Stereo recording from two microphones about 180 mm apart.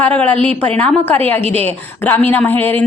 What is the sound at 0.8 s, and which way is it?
A woman's voice, 10° left (ahead or behind).